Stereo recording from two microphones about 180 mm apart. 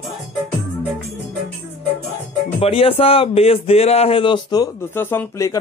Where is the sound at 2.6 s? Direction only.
30° left (ahead or behind).